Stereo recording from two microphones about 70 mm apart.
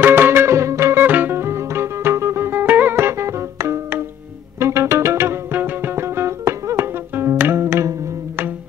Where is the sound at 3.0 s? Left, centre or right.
Right.